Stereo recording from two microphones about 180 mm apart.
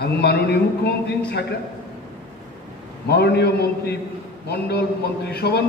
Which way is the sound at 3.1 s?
65° left (ahead or behind).